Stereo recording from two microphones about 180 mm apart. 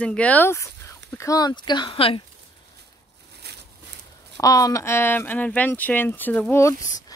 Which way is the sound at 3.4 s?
65° right (ahead or behind).